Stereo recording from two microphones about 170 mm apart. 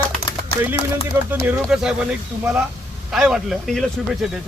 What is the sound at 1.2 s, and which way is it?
Speech, 5° right (ahead or behind).